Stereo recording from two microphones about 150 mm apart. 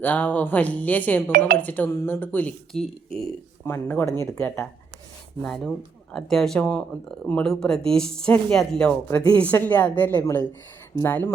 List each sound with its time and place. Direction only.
0.0 s speech: 10° left (ahead or behind)
9.0 s speech: 20° left (ahead or behind)
9.3 s speech: 10° left (ahead or behind)